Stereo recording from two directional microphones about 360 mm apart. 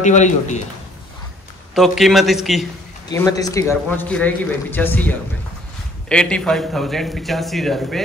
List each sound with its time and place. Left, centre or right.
0.0 s a man's voice: centre
1.8 s a man's voice: centre